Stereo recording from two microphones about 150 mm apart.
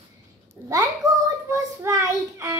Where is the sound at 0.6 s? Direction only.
20° right (ahead or behind).